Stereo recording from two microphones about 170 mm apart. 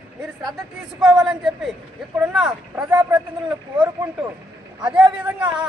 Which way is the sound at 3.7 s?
10° right (ahead or behind).